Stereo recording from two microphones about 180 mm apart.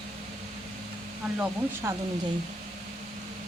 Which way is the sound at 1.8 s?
15° right (ahead or behind).